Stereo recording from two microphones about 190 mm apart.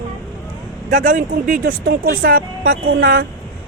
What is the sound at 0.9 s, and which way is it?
Speech, 40° right (ahead or behind).